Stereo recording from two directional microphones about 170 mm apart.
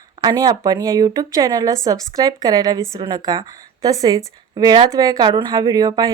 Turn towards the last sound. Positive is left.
turn(degrees=-20)  # may be behind; listen again after turning